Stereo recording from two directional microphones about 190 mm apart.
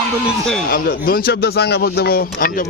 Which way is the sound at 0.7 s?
50° left (ahead or behind).